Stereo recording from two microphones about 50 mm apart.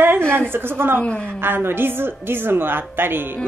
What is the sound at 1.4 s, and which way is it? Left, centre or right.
A woman's voice, right.